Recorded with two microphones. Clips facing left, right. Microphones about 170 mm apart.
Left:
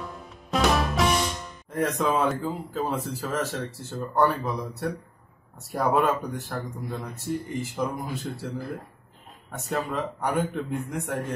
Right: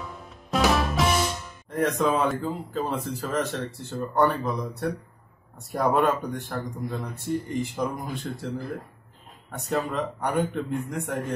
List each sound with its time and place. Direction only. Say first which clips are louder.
0.0 s speech: left 1 dB; centre (ahead or behind)
9.5 s speech: right 2 dB; centre (ahead or behind)